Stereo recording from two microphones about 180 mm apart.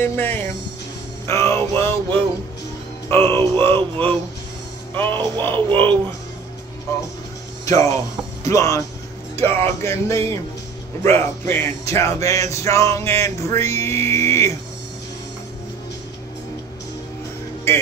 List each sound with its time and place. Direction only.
0.0 s music: 10° left (ahead or behind)
7.6 s speech: 20° left (ahead or behind)
8.5 s music: 15° left (ahead or behind)